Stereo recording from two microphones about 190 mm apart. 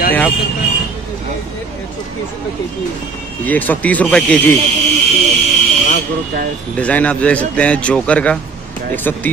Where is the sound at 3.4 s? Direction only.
10° left (ahead or behind).